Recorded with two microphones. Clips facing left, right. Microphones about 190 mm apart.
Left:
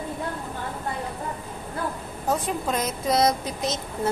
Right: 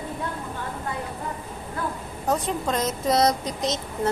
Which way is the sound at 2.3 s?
Centre (ahead or behind).